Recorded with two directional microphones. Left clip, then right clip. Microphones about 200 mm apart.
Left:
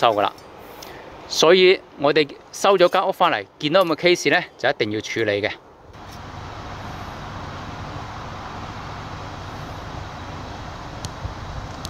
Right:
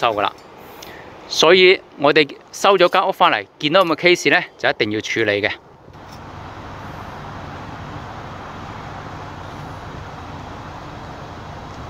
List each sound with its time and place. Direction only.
0.0 s speech: 20° left (ahead or behind)
1.3 s speech: 10° left (ahead or behind)